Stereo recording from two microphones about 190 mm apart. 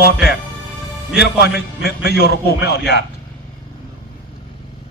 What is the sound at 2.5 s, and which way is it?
Speech, 65° left (ahead or behind).